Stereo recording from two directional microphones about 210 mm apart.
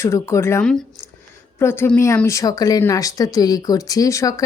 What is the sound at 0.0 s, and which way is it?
Speech, 15° left (ahead or behind).